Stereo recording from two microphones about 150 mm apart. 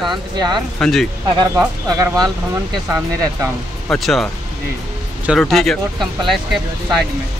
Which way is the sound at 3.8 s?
Centre (ahead or behind).